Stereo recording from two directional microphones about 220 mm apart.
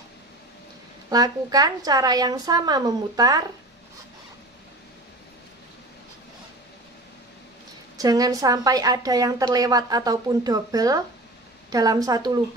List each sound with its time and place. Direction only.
1.1 s a woman's voice: 15° right (ahead or behind)
8.0 s a woman's voice: 15° right (ahead or behind)